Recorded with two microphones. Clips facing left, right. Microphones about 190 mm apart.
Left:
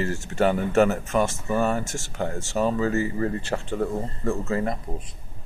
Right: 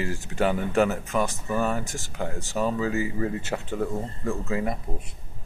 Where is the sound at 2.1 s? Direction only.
5° right (ahead or behind).